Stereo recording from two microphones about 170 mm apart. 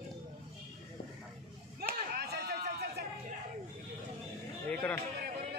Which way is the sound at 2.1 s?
70° right (ahead or behind).